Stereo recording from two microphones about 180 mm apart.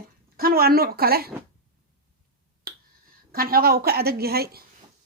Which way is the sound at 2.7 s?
60° right (ahead or behind).